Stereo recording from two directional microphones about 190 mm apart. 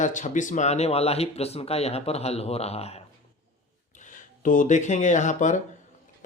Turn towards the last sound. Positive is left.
turn(degrees=40)  # may be behind; listen again after turning